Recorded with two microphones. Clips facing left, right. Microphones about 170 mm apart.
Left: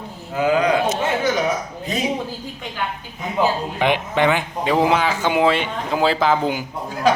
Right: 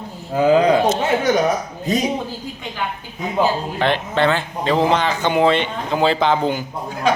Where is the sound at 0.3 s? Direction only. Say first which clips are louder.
Right 4 dB; 30° right (ahead or behind).